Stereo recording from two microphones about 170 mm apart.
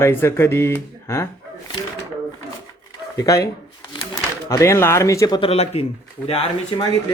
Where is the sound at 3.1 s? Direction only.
20° left (ahead or behind).